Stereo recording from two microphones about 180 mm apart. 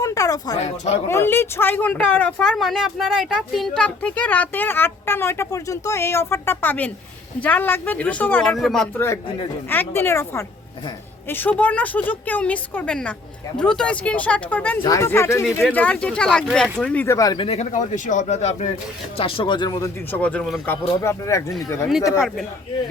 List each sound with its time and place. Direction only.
0.0 s a sound: 20° left (ahead or behind)
0.5 s speech: 40° left (ahead or behind)
1.0 s speech: 15° left (ahead or behind)
9.6 s speech: 10° left (ahead or behind)
20.1 s speech: 10° left (ahead or behind)
21.8 s speech: centre (ahead or behind)